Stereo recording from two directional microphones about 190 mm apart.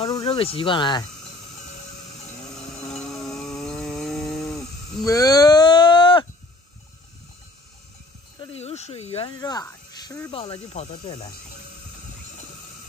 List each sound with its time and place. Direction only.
0.0 s speech: 30° left (ahead or behind)
3.0 s chainsaw: centre (ahead or behind)
5.0 s a sound: 20° left (ahead or behind)
8.4 s a sound: 30° left (ahead or behind)
9.4 s speech: 20° left (ahead or behind)
10.3 s speech: 30° left (ahead or behind)